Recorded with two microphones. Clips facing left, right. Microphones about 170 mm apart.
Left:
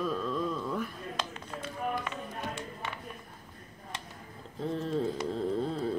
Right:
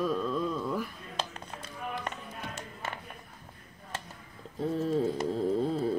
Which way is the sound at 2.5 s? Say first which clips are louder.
Left 1 dB; 40° right (ahead or behind).